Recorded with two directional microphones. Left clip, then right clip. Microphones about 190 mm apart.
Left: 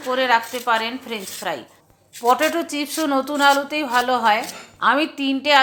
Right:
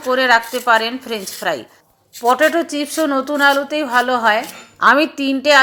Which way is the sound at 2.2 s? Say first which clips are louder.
Right 4 dB; 10° right (ahead or behind).